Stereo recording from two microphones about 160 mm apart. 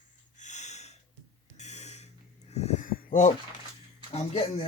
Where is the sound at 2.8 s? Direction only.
60° left (ahead or behind).